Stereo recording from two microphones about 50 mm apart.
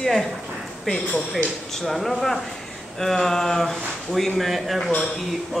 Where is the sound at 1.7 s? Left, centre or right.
Centre.